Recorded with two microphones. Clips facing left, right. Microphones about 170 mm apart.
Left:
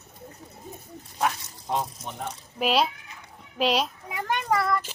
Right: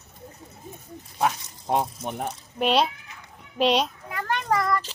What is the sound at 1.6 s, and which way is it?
Speech, 55° right (ahead or behind).